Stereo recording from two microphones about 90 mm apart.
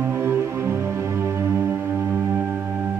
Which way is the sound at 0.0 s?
25° right (ahead or behind).